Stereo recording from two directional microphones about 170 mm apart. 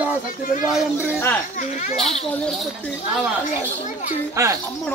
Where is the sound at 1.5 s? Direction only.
45° left (ahead or behind).